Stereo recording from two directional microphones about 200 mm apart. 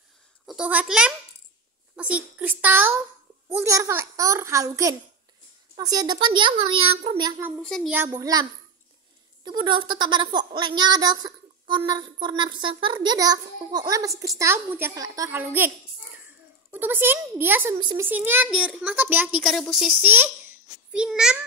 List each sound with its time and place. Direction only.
0.5 s a child's voice: 5° right (ahead or behind); by 7.4 s 20° right (ahead or behind)
7.6 s a child's voice: 5° left (ahead or behind)
7.9 s a child's voice: 15° right (ahead or behind)
16.7 s a child's voice: 10° right (ahead or behind)
17.7 s speech: 20° right (ahead or behind)
18.0 s a child's voice: 10° right (ahead or behind)